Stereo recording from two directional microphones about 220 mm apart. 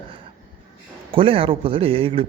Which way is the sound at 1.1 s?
25° right (ahead or behind).